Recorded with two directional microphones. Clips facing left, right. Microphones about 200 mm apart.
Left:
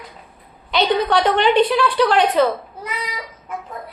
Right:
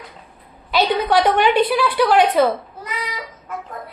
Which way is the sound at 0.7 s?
5° right (ahead or behind).